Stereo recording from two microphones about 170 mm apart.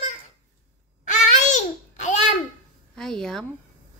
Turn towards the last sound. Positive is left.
turn(degrees=5)  # may be behind; listen again after turning